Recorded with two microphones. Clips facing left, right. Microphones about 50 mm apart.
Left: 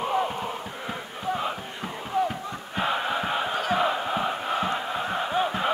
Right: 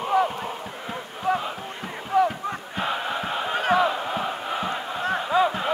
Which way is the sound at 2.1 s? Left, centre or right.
Right.